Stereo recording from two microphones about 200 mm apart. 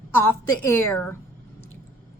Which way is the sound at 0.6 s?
10° left (ahead or behind).